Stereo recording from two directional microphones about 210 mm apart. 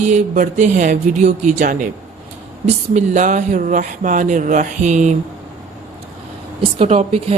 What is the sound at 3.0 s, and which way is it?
Speech, 35° right (ahead or behind).